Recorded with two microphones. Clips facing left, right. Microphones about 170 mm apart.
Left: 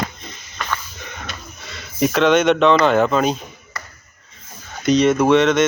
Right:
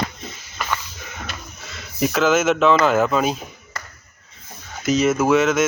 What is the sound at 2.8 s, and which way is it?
Speech, 5° right (ahead or behind).